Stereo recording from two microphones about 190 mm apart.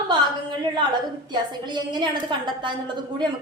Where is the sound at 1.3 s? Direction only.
25° right (ahead or behind).